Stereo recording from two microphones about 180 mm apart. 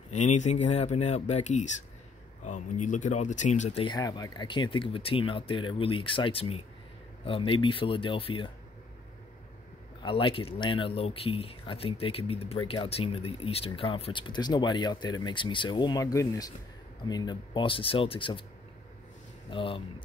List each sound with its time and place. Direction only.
0.1 s speech: 40° left (ahead or behind)
3.8 s speech: 25° left (ahead or behind)
10.0 s speech: 30° left (ahead or behind)
19.5 s speech: 30° left (ahead or behind)